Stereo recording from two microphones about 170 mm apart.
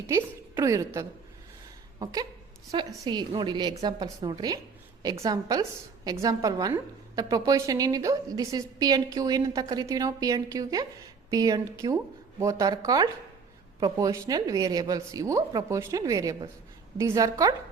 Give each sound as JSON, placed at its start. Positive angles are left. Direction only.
{"t": 0.1, "sound": "a woman's voice", "side_deg": -20}